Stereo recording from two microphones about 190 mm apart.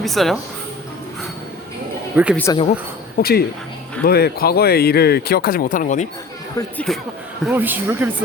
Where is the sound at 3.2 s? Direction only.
55° left (ahead or behind).